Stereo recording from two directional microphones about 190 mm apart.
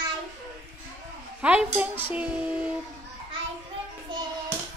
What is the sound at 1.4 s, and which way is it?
A child's voice, 5° right (ahead or behind).